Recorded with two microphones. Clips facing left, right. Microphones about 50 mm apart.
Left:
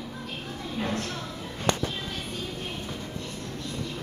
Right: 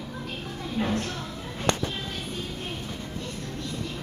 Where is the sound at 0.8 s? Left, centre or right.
Centre.